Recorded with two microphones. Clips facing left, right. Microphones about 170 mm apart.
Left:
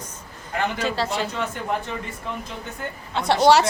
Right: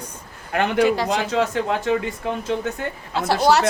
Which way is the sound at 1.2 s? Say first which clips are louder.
Right 6 dB; 90° right.